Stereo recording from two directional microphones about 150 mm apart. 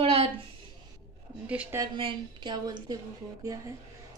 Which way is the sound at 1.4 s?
10° right (ahead or behind).